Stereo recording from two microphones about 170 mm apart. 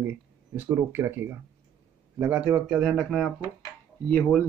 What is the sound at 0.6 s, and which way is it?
Speech, 15° right (ahead or behind).